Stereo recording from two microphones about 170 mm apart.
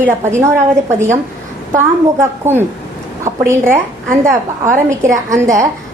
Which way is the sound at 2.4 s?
15° right (ahead or behind).